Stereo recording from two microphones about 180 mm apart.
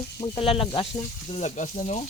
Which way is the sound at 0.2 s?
30° left (ahead or behind).